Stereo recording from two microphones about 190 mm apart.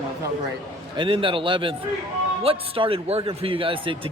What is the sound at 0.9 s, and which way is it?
Speech, 25° right (ahead or behind).